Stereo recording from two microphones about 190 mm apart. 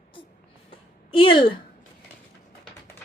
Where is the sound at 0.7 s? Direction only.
30° left (ahead or behind).